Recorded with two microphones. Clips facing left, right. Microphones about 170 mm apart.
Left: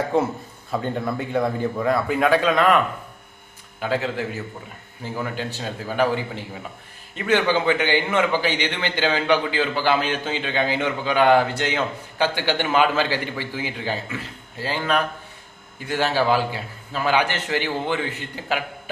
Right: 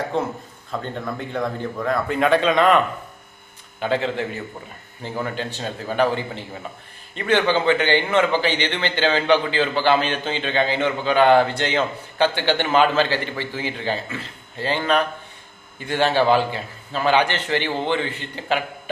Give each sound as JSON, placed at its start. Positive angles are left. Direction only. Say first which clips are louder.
{"t": 0.1, "sound": "a man's voice", "louder": "left 3 dB", "side_deg": 5}